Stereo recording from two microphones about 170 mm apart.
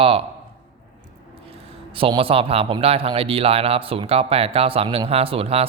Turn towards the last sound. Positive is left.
turn(degrees=-35)  # may be behind; listen again after turning